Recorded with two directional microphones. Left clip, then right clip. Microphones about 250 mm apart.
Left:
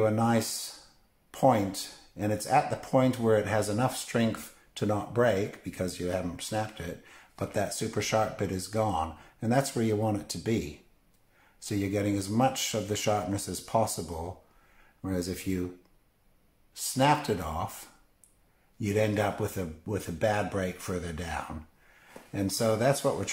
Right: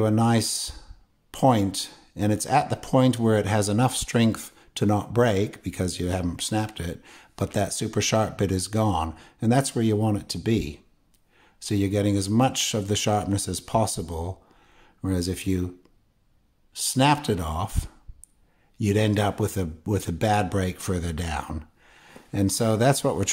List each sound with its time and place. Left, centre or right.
0.0 s speech: right
16.7 s speech: right
18.8 s speech: right